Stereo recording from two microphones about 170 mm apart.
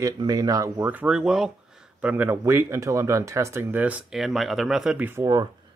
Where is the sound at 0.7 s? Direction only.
10° right (ahead or behind).